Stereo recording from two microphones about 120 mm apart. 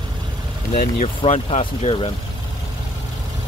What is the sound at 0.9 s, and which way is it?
Speech, 70° left (ahead or behind).